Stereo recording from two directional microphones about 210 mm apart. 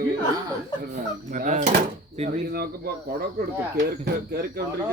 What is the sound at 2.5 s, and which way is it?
Speech, 50° right (ahead or behind).